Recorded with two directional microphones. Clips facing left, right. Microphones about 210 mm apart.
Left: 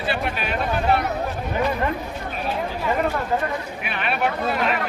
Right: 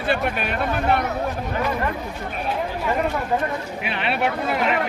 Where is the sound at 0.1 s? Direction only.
50° right (ahead or behind).